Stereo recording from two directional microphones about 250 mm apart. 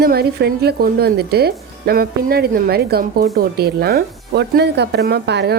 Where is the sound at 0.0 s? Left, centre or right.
Right.